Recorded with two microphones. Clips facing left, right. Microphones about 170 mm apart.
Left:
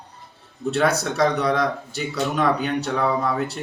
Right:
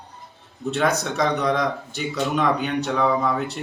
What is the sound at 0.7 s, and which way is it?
Speech, 5° left (ahead or behind).